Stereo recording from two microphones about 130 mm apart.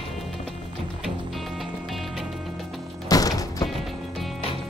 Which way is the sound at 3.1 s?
30° left (ahead or behind).